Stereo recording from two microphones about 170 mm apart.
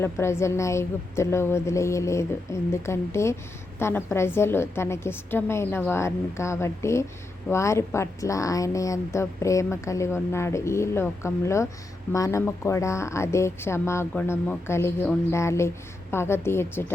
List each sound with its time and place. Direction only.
0.0 s a woman's voice: 15° left (ahead or behind)